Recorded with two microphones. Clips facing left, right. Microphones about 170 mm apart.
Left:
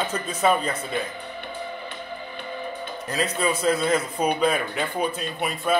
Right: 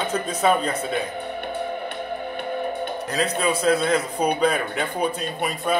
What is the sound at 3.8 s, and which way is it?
Speech, 5° left (ahead or behind).